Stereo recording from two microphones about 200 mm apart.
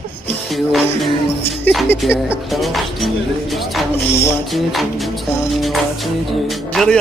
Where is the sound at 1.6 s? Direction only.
Centre (ahead or behind).